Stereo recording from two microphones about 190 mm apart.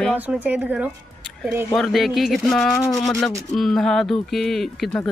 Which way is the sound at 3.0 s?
Centre (ahead or behind).